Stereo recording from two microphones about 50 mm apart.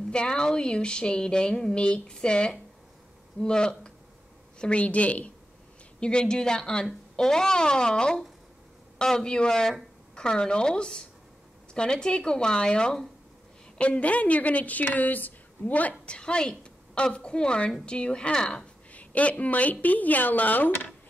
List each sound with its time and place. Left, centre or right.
0.1 s speech: centre
13.7 s speech: left
16.1 s a woman's voice: centre
18.9 s a woman's voice: left